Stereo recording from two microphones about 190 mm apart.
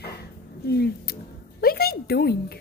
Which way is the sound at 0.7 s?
55° left (ahead or behind).